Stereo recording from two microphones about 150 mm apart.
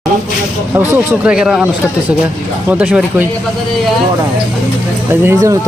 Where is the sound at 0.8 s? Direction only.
5° right (ahead or behind).